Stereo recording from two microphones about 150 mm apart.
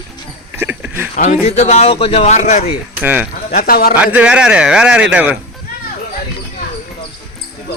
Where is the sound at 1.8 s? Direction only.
40° left (ahead or behind).